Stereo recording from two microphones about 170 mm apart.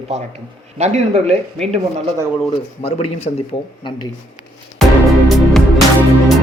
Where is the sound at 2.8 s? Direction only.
35° left (ahead or behind).